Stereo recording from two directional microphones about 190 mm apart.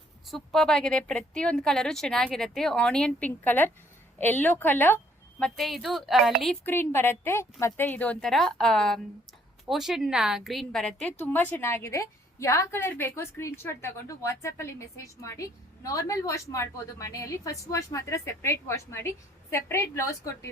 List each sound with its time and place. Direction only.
0.3 s a woman's voice: centre (ahead or behind)